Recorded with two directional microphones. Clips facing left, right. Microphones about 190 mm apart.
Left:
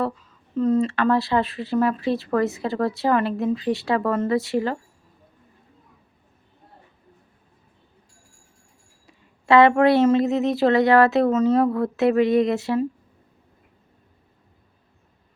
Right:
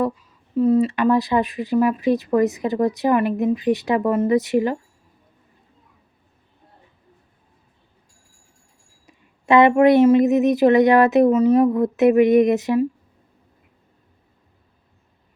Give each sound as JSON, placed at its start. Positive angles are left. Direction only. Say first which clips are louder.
{"t": 0.5, "sound": "speech", "louder": "right 3 dB", "side_deg": -10}
{"t": 9.0, "sound": "speech", "louder": "right 1 dB", "side_deg": -20}